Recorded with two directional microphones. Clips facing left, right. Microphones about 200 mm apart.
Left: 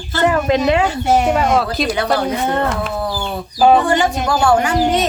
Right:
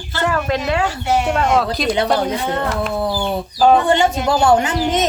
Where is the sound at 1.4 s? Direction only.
5° left (ahead or behind).